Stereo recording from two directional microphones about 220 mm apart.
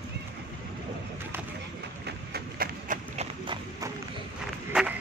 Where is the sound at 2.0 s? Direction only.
45° right (ahead or behind).